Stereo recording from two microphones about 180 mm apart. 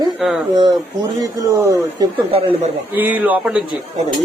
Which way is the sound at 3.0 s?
10° right (ahead or behind).